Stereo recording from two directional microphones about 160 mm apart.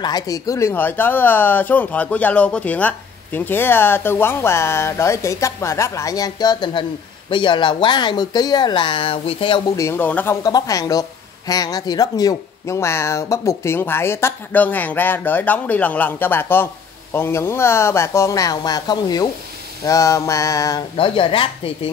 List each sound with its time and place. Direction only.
0.0 s speech: 25° left (ahead or behind)
9.8 s speech: 15° left (ahead or behind)
10.4 s speech: 25° left (ahead or behind)
19.8 s a sound: 20° left (ahead or behind)
20.9 s a woman's voice: 35° left (ahead or behind)